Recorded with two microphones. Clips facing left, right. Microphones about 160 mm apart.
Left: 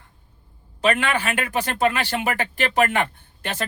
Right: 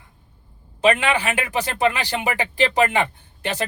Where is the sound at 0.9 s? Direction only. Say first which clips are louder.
Right 3 dB; 15° right (ahead or behind).